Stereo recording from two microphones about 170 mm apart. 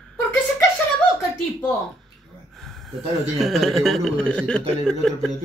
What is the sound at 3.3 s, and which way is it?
Speech, centre (ahead or behind).